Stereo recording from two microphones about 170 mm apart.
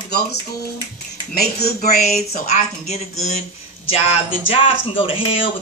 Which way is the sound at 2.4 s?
40° left (ahead or behind).